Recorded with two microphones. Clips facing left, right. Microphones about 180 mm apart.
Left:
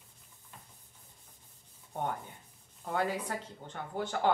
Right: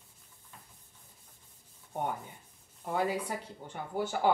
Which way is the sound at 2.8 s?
10° right (ahead or behind).